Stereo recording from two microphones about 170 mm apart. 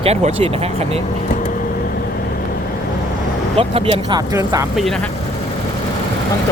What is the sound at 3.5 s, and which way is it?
Speech, 35° right (ahead or behind).